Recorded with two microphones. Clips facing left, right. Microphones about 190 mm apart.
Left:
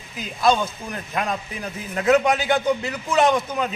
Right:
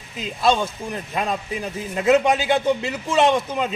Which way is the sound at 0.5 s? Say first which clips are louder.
Even; 25° right (ahead or behind).